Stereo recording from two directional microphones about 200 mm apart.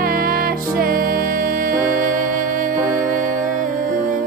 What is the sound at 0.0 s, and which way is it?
Music, 45° right (ahead or behind).